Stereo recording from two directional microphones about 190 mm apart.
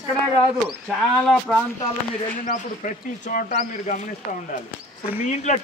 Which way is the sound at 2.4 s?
40° left (ahead or behind).